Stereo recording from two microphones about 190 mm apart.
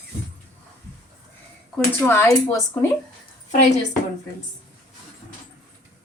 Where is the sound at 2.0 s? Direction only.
15° left (ahead or behind).